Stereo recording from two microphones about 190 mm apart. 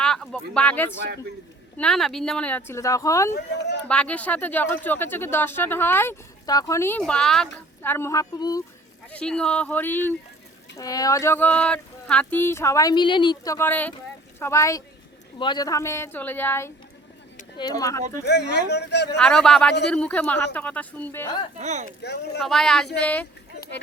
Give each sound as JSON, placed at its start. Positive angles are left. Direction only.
{"t": 0.0, "sound": "speech", "side_deg": 5}
{"t": 9.1, "sound": "speech", "side_deg": 5}
{"t": 18.3, "sound": "speech", "side_deg": 60}
{"t": 19.2, "sound": "a man's voice", "side_deg": 5}
{"t": 21.6, "sound": "speech", "side_deg": -40}
{"t": 22.0, "sound": "speech", "side_deg": 60}
{"t": 22.4, "sound": "a man's voice", "side_deg": 0}